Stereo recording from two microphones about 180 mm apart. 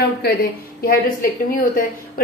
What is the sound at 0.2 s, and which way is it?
A woman's voice, 60° left (ahead or behind).